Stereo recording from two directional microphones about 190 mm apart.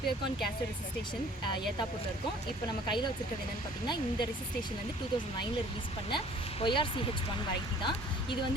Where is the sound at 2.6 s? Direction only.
25° left (ahead or behind).